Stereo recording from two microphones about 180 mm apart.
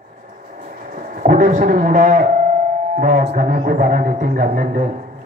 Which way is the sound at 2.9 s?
40° right (ahead or behind).